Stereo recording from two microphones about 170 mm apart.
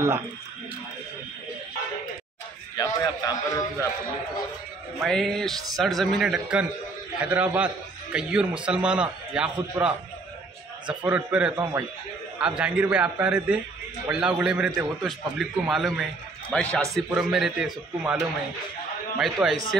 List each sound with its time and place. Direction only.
2.8 s a man's voice: 20° left (ahead or behind)
5.0 s a man's voice: centre (ahead or behind)
11.1 s a man's voice: 10° right (ahead or behind)
12.4 s a man's voice: 5° right (ahead or behind)
19.1 s a man's voice: 5° right (ahead or behind)